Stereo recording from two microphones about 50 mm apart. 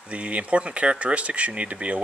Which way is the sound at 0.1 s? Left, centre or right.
Right.